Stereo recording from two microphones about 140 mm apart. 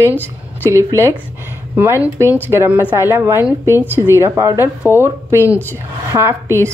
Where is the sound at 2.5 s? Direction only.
15° right (ahead or behind).